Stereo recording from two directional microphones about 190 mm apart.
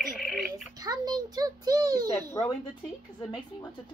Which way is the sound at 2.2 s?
15° left (ahead or behind).